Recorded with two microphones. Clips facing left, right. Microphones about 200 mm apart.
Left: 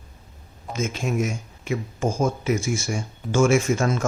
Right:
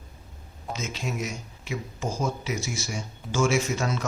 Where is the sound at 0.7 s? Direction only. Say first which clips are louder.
Left 6 dB; 50° left (ahead or behind).